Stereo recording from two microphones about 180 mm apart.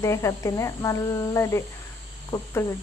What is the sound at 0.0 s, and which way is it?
Speech, 15° left (ahead or behind).